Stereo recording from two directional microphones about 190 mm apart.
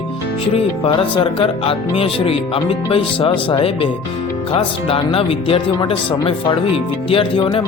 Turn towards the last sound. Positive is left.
turn(degrees=30)  # may be behind; listen again after turning